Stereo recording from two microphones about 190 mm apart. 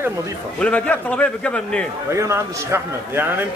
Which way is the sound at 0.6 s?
5° left (ahead or behind).